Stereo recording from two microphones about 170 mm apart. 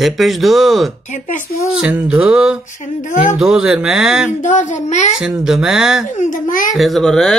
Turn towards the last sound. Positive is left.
turn(degrees=5)  # may be behind; listen again after turning